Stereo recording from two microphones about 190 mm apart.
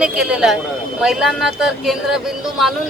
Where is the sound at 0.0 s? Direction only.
5° right (ahead or behind).